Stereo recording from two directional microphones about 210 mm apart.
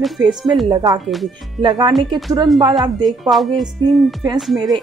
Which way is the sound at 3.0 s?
Centre (ahead or behind).